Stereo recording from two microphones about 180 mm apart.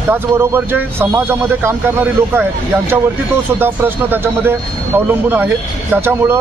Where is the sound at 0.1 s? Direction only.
10° right (ahead or behind).